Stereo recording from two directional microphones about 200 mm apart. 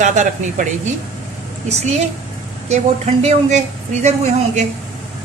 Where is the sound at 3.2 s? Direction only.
35° right (ahead or behind).